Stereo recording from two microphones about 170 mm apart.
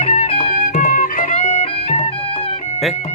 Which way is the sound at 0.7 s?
50° left (ahead or behind).